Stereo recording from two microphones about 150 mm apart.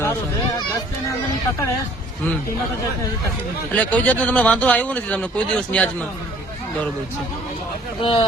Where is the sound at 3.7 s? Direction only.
10° left (ahead or behind).